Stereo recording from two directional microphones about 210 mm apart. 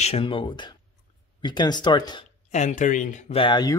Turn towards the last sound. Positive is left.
turn(degrees=20)  # may be behind; listen again after turning